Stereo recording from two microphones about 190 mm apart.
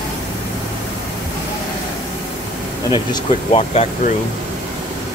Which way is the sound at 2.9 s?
25° left (ahead or behind).